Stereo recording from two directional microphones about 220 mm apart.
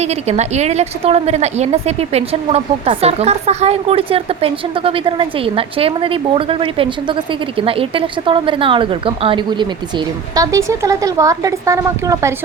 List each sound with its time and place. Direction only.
0.0 s a woman's voice: 30° right (ahead or behind)